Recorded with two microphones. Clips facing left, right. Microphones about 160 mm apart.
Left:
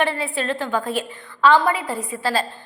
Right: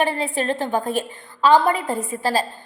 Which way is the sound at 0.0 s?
45° right (ahead or behind).